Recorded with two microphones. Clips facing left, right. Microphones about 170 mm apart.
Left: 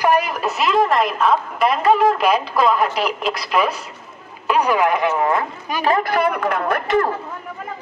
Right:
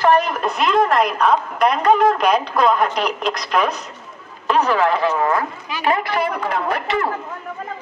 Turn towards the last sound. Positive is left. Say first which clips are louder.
# left 3 dB
turn(degrees=50)  # may be behind; listen again after turning